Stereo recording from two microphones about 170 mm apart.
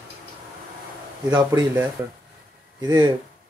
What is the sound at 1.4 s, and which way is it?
Speech, 20° right (ahead or behind).